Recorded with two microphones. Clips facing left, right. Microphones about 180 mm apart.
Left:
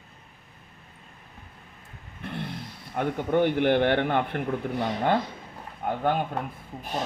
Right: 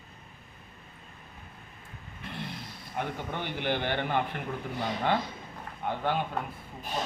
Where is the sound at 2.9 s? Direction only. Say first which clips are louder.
Left 10 dB; 55° left (ahead or behind).